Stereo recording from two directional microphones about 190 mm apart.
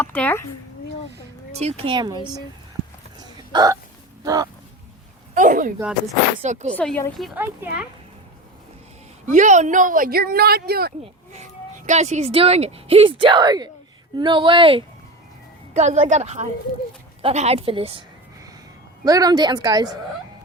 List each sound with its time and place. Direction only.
0.0 s speech: 10° left (ahead or behind)
1.5 s speech: 35° right (ahead or behind)
3.2 s hiccup: 20° right (ahead or behind)
4.2 s speech: 20° right (ahead or behind)
5.3 s a sound: 45° right (ahead or behind)
6.4 s a woman's voice: 40° right (ahead or behind)
6.7 s a woman's voice: 10° left (ahead or behind)
7.2 s speech: centre (ahead or behind)
9.2 s a woman's voice: 40° right (ahead or behind)
11.9 s a woman's voice: 35° right (ahead or behind)
15.7 s a woman's voice: 35° right (ahead or behind)
19.0 s speech: 20° right (ahead or behind)